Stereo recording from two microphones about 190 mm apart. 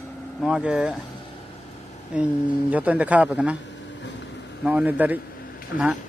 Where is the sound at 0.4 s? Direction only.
5° right (ahead or behind).